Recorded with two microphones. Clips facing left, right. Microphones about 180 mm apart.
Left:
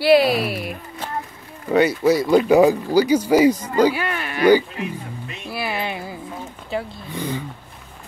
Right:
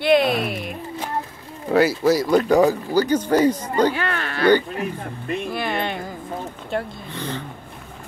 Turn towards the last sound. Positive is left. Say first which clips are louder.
# left 3 dB
turn(degrees=10)  # may be behind; listen again after turning